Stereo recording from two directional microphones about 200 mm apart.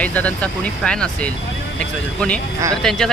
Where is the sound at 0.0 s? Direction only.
5° left (ahead or behind).